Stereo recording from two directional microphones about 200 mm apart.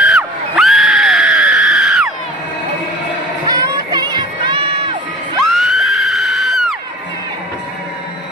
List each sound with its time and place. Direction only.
0.1 s screaming: centre (ahead or behind)
3.4 s crowd: 20° right (ahead or behind)
5.4 s music: centre (ahead or behind)